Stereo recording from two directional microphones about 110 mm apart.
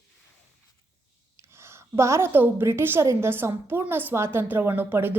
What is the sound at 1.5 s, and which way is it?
A woman's voice, 25° right (ahead or behind).